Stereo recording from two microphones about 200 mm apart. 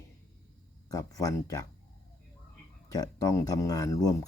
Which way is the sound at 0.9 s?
15° left (ahead or behind).